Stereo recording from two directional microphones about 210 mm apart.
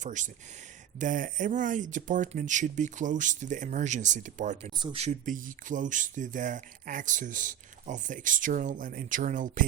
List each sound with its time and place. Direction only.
0.0 s speech: 35° right (ahead or behind)